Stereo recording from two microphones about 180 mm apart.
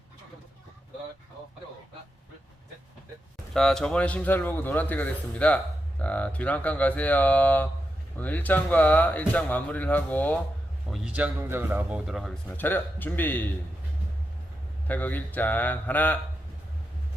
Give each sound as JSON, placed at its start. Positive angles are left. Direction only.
{"t": 3.5, "sound": "speech", "side_deg": 0}
{"t": 10.9, "sound": "speech", "side_deg": -5}
{"t": 14.8, "sound": "speech", "side_deg": 10}